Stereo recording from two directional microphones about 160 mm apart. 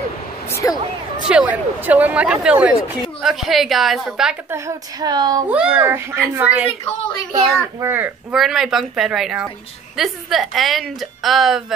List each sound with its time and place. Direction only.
0.5 s speech: 20° left (ahead or behind)
1.3 s speech: 10° right (ahead or behind)
4.5 s a woman's voice: 20° right (ahead or behind)
5.5 s speech: 5° right (ahead or behind)
7.8 s speech: 10° right (ahead or behind)